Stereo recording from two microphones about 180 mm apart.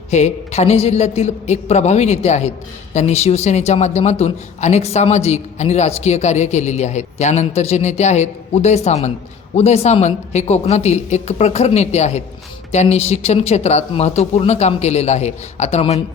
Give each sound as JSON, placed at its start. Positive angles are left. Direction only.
{"t": 0.1, "sound": "a man's voice", "side_deg": 40}